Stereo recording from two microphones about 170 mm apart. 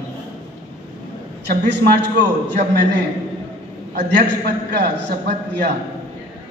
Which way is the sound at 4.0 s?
75° right (ahead or behind).